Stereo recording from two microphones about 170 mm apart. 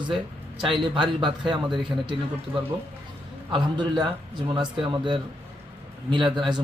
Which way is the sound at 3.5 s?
30° right (ahead or behind).